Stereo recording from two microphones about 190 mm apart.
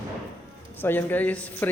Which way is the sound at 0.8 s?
10° left (ahead or behind).